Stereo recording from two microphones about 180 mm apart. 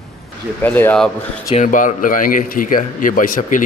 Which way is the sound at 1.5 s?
45° left (ahead or behind).